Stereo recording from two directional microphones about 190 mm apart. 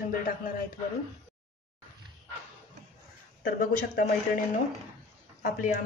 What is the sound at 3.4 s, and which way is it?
Speech, 45° left (ahead or behind).